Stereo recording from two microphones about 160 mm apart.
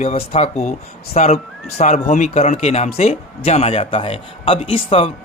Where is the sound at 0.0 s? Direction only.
40° left (ahead or behind).